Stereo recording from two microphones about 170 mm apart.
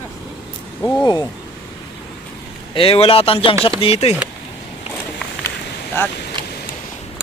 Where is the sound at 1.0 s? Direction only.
25° left (ahead or behind).